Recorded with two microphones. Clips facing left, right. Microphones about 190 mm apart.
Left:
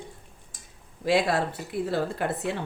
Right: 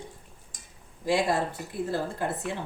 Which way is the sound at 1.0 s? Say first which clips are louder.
Left 2 dB; 70° left (ahead or behind).